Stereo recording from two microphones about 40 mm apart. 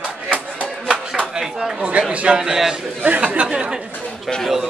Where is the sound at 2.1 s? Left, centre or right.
Right.